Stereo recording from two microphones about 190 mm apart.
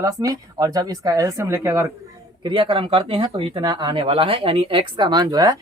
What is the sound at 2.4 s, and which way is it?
Speech, 25° right (ahead or behind).